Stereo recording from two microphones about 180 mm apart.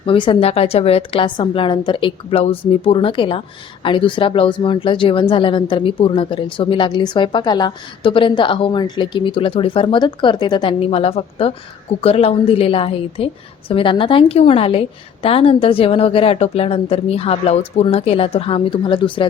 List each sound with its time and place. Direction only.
0.0 s a woman's voice: 30° left (ahead or behind)